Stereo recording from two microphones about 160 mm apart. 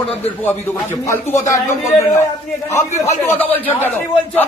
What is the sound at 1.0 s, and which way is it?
A man's voice, 15° left (ahead or behind).